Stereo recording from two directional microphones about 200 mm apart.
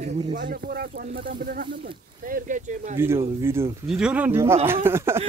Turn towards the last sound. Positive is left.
turn(degrees=-10)  # may be behind; listen again after turning